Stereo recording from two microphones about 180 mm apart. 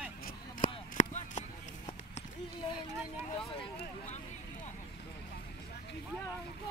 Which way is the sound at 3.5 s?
35° left (ahead or behind).